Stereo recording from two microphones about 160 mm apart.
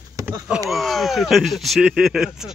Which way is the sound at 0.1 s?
20° right (ahead or behind).